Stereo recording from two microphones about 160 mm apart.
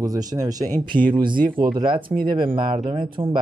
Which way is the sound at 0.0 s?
25° right (ahead or behind).